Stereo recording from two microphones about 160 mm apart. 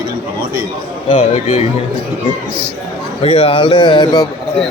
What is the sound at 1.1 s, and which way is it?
Speech, 50° left (ahead or behind).